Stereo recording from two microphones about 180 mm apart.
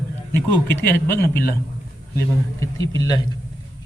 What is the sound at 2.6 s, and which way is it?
Speech, 20° left (ahead or behind).